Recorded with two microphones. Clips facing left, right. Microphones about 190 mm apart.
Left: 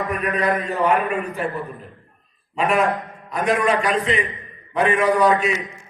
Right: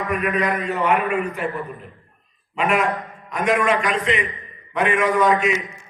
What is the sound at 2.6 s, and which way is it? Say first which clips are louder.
A man's voice: left 1 dB; 35° left (ahead or behind).